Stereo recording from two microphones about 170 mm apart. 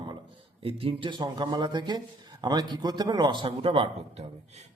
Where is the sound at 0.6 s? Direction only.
35° right (ahead or behind).